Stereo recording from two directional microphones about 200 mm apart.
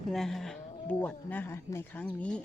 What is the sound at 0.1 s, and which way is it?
A woman's voice, centre (ahead or behind).